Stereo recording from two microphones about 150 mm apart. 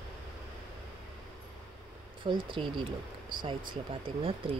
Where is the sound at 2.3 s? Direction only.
35° right (ahead or behind).